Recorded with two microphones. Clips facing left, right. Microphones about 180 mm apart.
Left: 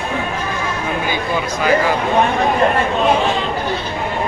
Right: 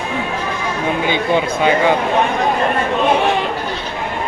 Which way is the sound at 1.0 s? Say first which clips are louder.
Right 4 dB; 25° right (ahead or behind).